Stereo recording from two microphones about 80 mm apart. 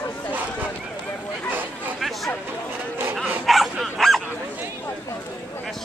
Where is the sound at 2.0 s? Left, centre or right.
Centre.